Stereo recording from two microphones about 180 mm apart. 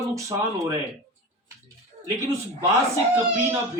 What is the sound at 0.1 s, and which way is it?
Speech, 15° right (ahead or behind).